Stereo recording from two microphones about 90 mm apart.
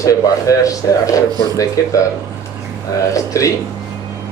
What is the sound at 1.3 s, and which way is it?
Speech, 45° right (ahead or behind).